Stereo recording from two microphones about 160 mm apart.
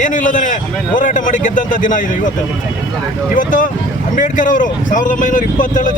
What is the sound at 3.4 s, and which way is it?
A man's voice, 55° left (ahead or behind).